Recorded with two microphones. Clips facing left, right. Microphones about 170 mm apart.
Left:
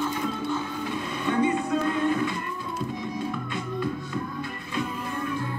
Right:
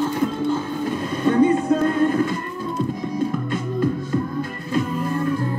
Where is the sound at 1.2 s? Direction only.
40° right (ahead or behind).